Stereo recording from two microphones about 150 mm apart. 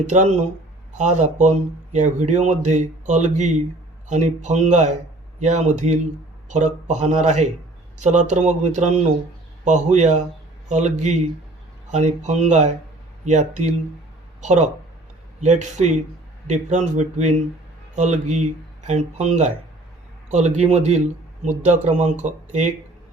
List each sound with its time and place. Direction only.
0.1 s speech: 50° right (ahead or behind)